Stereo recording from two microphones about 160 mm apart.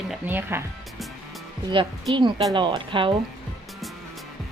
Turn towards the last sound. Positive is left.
turn(degrees=-30)  # may be behind; listen again after turning